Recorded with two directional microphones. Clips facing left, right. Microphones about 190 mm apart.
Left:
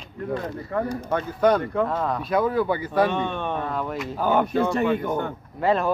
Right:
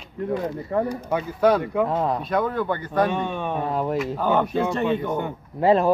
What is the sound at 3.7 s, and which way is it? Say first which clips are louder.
Speech: right 4 dB; 30° right (ahead or behind).